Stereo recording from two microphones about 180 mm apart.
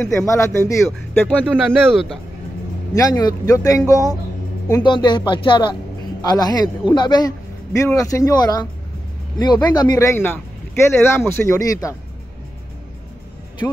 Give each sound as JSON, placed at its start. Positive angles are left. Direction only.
{"t": 0.0, "sound": "speech", "side_deg": 15}
{"t": 1.5, "sound": "speech", "side_deg": 0}
{"t": 2.9, "sound": "a man's voice", "side_deg": 20}
{"t": 9.8, "sound": "speech", "side_deg": 20}